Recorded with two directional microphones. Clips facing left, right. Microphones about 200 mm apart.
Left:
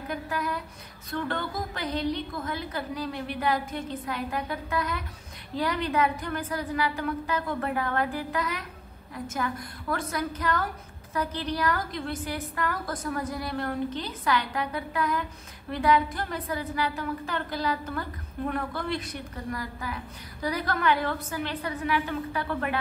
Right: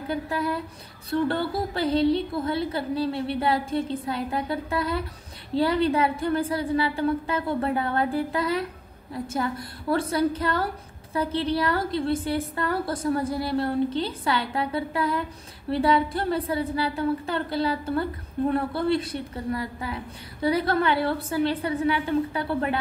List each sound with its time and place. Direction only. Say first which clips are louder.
0.1 s a woman's voice: right 5 dB; 30° right (ahead or behind)